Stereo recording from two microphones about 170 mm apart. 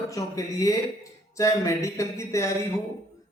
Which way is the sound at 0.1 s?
20° left (ahead or behind).